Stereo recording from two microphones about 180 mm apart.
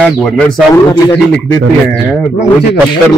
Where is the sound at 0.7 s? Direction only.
20° left (ahead or behind).